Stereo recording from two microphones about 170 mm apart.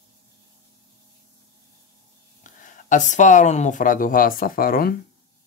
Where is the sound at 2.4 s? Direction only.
50° left (ahead or behind).